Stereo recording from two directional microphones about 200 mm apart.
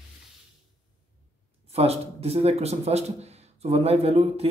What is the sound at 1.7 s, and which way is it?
Speech, 30° right (ahead or behind).